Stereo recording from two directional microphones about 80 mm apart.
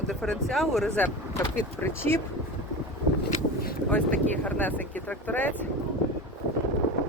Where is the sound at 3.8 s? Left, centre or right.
Centre.